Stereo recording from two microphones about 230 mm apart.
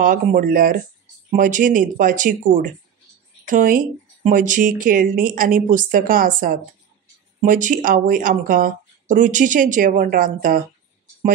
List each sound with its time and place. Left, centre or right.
0.0 s speech: right